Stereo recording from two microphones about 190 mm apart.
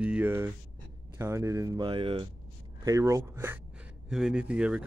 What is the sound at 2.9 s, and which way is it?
Speech, 15° right (ahead or behind).